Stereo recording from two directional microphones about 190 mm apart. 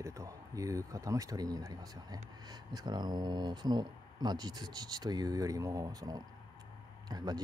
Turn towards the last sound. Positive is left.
turn(degrees=-20)  # may be behind; listen again after turning